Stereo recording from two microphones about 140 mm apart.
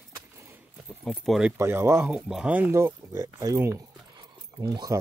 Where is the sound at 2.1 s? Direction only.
5° right (ahead or behind).